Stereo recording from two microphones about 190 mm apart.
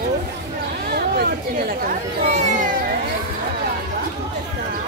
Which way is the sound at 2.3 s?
40° right (ahead or behind).